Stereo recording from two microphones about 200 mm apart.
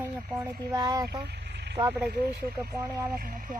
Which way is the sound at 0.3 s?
15° right (ahead or behind).